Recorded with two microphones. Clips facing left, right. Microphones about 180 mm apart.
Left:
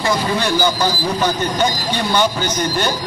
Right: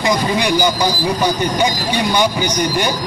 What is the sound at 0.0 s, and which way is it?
A man's voice, 15° right (ahead or behind).